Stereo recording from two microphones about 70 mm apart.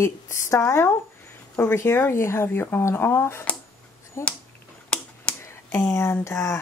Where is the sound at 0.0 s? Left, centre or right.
Left.